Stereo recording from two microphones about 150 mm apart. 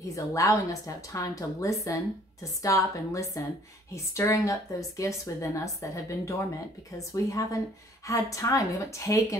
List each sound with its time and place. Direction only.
0.1 s speech: 20° left (ahead or behind)